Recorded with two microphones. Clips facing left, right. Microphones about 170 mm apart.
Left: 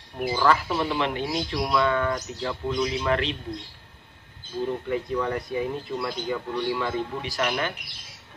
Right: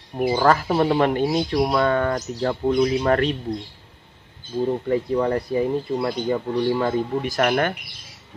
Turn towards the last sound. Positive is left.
turn(degrees=-55)  # may be behind; listen again after turning